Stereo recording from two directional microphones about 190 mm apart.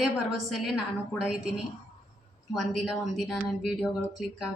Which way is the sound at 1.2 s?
5° right (ahead or behind).